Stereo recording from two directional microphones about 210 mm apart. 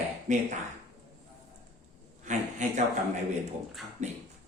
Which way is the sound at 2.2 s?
35° right (ahead or behind).